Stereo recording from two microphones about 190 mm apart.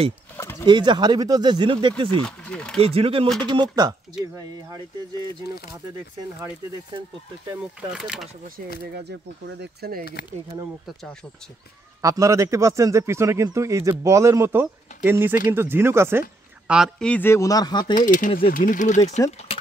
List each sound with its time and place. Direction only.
0.4 s a sound: 15° left (ahead or behind)
0.7 s speech: 25° right (ahead or behind)
2.2 s speech: 5° left (ahead or behind)
2.8 s speech: 30° right (ahead or behind)
7.9 s speech: 5° right (ahead or behind)
9.6 s speech: 55° right (ahead or behind)
12.0 s a man's voice: 15° right (ahead or behind); by 17.9 s 20° left (ahead or behind)
17.9 s speech: 45° left (ahead or behind)